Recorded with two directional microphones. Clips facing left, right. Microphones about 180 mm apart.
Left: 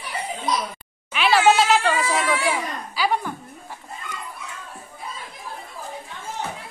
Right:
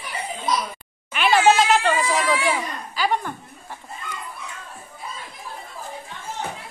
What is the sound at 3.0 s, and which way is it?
Speech, 5° left (ahead or behind).